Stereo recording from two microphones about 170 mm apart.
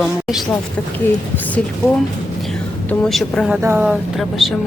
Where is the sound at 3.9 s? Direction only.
Centre (ahead or behind).